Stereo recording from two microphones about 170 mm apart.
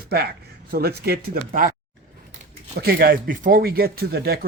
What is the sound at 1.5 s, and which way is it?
Speech, 55° right (ahead or behind).